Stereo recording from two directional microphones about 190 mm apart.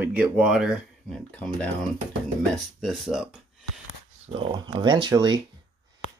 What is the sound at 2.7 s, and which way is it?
Speech, centre (ahead or behind).